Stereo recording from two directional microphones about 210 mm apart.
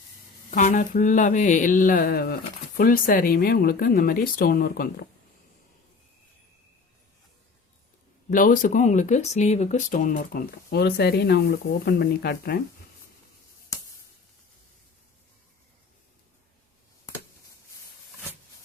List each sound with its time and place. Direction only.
0.5 s speech: 35° left (ahead or behind)
8.3 s speech: 40° left (ahead or behind)
13.7 s a sound: 15° left (ahead or behind)